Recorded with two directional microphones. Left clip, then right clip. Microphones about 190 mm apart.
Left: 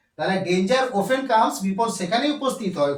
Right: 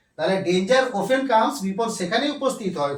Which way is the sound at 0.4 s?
5° right (ahead or behind).